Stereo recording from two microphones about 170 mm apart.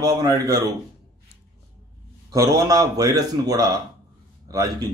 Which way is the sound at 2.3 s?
20° right (ahead or behind).